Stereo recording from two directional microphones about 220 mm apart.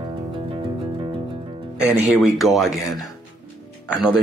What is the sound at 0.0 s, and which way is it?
Music, 25° right (ahead or behind).